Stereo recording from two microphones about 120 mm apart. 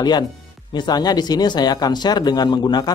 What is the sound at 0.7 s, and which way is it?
Speech, 35° left (ahead or behind).